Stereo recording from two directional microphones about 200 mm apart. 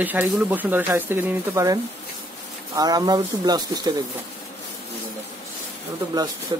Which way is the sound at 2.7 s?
20° right (ahead or behind).